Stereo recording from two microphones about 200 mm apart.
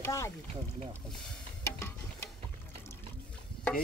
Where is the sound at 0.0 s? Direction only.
15° left (ahead or behind).